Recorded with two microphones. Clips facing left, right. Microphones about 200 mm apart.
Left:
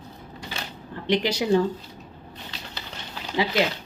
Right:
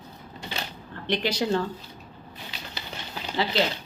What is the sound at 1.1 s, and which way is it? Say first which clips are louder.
Speech: left 4 dB; 10° left (ahead or behind).